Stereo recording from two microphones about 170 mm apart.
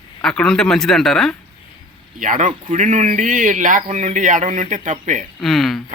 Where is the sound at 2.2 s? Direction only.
50° right (ahead or behind).